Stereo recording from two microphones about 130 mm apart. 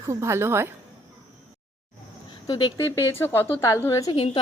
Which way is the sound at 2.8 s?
20° left (ahead or behind).